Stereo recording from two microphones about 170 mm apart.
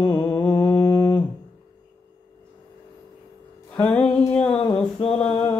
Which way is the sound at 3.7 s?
5° left (ahead or behind).